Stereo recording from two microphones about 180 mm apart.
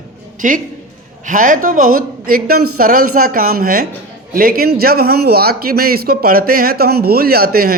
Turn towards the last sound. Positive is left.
turn(degrees=-55)  # may be behind; listen again after turning